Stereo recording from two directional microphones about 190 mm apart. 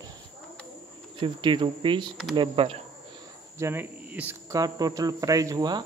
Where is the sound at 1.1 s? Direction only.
25° right (ahead or behind).